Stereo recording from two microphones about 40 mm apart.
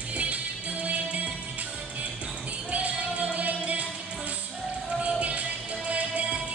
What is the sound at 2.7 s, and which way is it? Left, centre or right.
Music, right.